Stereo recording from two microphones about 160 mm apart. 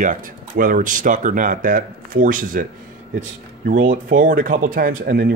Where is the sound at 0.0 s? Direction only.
55° right (ahead or behind).